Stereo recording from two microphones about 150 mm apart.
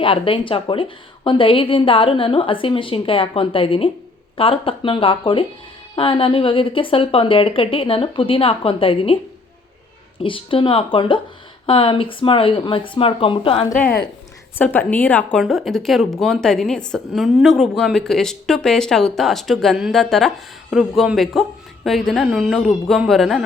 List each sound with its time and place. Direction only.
0.0 s speech: 35° left (ahead or behind)
10.2 s speech: 35° left (ahead or behind)
14.6 s a woman's voice: 10° left (ahead or behind)
15.4 s a woman's voice: centre (ahead or behind)